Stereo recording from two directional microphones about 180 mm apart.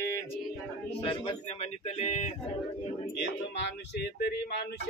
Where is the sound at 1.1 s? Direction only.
35° left (ahead or behind).